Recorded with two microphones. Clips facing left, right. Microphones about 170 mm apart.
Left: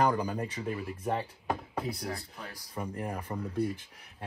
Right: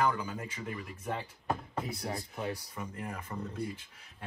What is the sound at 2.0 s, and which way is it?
Speech, 25° right (ahead or behind).